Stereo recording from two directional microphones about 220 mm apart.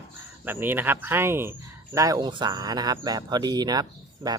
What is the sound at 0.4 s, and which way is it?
Speech, 10° right (ahead or behind).